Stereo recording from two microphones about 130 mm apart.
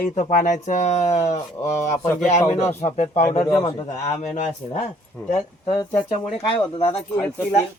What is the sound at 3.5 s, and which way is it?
Speech, 55° left (ahead or behind).